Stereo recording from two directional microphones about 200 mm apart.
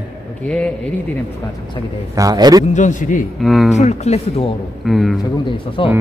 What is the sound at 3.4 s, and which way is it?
Speech, centre (ahead or behind).